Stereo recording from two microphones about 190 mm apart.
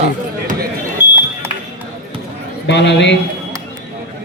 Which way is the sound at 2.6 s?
65° left (ahead or behind).